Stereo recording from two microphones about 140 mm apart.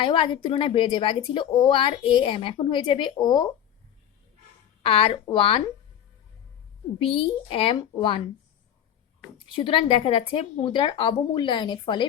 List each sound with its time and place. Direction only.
0.0 s a woman's voice: 40° left (ahead or behind)
4.8 s a woman's voice: 45° left (ahead or behind)
7.0 s a woman's voice: 40° left (ahead or behind)
9.6 s a woman's voice: 35° left (ahead or behind)